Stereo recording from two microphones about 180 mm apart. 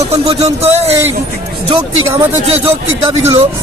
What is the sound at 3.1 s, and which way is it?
Speech, 25° right (ahead or behind).